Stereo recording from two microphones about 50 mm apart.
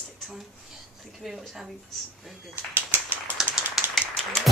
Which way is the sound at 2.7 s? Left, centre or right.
Right.